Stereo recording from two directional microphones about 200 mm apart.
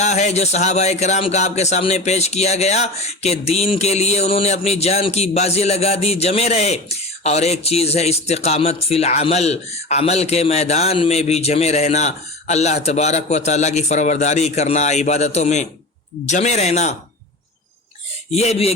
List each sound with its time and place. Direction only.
0.0 s a man's voice: 35° left (ahead or behind)
18.3 s a man's voice: 30° left (ahead or behind)